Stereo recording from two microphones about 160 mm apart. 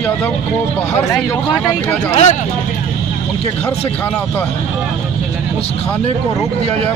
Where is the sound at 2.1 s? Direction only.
45° left (ahead or behind).